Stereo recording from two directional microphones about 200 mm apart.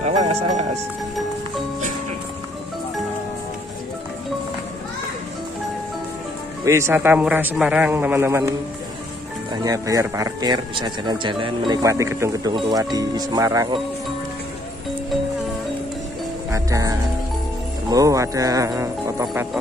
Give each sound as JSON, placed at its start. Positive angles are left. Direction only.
{"t": 0.0, "sound": "music", "side_deg": -35}
{"t": 6.6, "sound": "speech", "side_deg": -15}
{"t": 16.5, "sound": "speech", "side_deg": -15}